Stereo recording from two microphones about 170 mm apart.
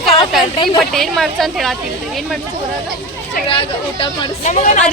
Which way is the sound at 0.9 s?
Centre (ahead or behind).